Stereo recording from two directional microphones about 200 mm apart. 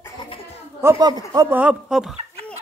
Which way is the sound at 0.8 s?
15° right (ahead or behind).